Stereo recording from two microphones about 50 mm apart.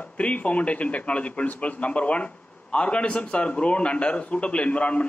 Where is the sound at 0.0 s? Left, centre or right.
Left.